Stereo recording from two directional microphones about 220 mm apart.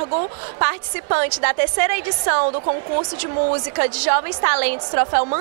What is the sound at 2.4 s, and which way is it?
A woman's voice, 30° right (ahead or behind).